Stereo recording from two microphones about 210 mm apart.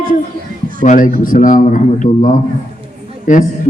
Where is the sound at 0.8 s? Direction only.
35° left (ahead or behind).